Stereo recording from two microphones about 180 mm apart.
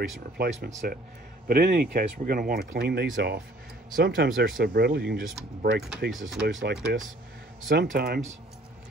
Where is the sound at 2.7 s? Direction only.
65° right (ahead or behind).